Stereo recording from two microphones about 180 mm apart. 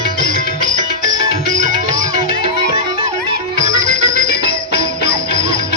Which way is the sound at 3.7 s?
60° left (ahead or behind).